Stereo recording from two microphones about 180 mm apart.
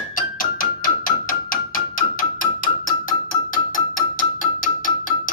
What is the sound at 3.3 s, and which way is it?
Music, 50° left (ahead or behind).